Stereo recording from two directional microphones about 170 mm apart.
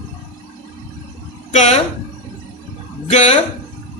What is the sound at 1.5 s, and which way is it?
Speech, 40° left (ahead or behind).